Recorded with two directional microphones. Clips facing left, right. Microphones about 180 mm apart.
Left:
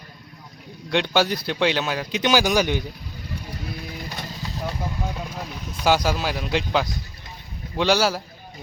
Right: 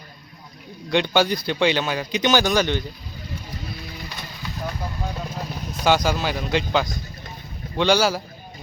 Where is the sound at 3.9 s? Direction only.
45° left (ahead or behind).